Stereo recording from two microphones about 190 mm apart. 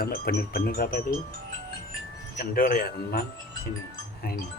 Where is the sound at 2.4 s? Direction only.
50° left (ahead or behind).